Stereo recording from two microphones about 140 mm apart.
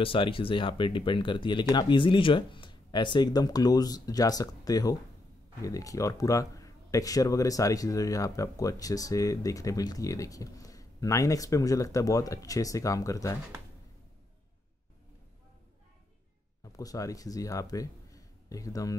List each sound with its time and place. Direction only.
0.0 s speech: 40° left (ahead or behind); by 13.4 s 25° left (ahead or behind)
16.7 s speech: 25° left (ahead or behind)